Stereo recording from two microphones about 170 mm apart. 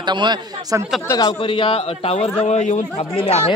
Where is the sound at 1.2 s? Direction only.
30° left (ahead or behind).